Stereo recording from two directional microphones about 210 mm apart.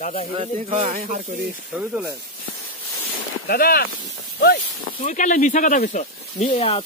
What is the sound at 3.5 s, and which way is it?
Speech, 45° left (ahead or behind).